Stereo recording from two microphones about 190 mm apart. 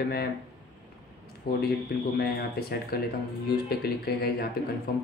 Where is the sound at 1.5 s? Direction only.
55° left (ahead or behind).